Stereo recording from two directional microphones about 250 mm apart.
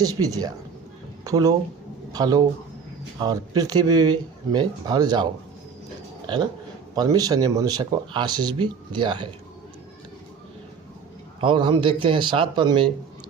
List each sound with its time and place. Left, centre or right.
0.0 s speech: centre
11.3 s speech: centre